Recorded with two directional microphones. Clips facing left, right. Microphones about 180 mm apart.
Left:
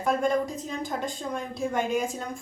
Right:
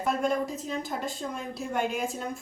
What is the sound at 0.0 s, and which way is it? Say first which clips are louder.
A woman's voice: left 2 dB; centre (ahead or behind).